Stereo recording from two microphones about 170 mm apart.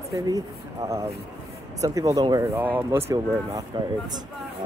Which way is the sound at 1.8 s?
20° right (ahead or behind).